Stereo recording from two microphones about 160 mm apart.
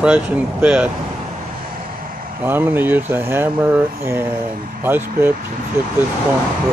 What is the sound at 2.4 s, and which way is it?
Speech, 15° right (ahead or behind).